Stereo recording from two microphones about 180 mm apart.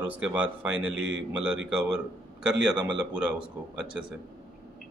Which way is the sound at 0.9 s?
90° right.